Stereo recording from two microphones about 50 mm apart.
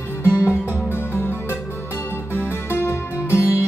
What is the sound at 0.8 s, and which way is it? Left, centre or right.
Music, left.